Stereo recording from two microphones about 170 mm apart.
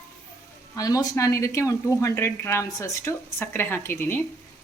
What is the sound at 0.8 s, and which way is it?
Speech, 20° left (ahead or behind).